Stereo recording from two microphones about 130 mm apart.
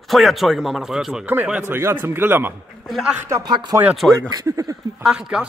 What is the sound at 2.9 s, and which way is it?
Speech, centre (ahead or behind).